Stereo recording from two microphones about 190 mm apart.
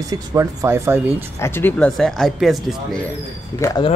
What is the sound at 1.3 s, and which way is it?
Speech, 10° left (ahead or behind).